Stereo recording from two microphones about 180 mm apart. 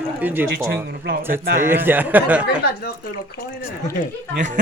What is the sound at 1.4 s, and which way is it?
Speech, 50° right (ahead or behind).